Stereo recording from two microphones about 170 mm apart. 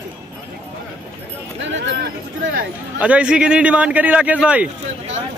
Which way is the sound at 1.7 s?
90° right.